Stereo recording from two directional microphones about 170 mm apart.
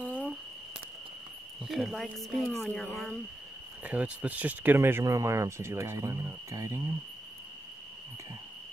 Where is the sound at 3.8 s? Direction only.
10° right (ahead or behind).